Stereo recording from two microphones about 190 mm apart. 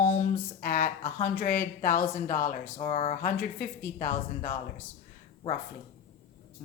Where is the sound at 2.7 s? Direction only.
35° left (ahead or behind).